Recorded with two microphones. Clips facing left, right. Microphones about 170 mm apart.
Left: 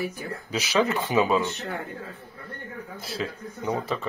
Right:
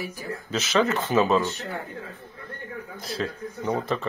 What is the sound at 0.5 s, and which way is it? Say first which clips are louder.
Speech: right 1 dB; 10° left (ahead or behind).